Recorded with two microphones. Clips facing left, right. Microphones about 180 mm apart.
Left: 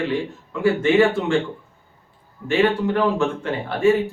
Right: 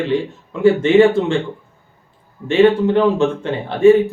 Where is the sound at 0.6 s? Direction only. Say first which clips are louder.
Right 5 dB; 20° right (ahead or behind).